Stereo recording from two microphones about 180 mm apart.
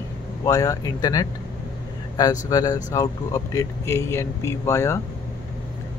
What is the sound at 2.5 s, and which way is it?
Speech, 20° left (ahead or behind).